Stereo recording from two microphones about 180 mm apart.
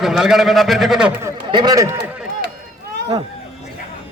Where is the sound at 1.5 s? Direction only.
20° right (ahead or behind).